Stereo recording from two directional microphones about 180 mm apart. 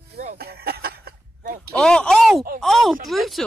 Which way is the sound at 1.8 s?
5° left (ahead or behind).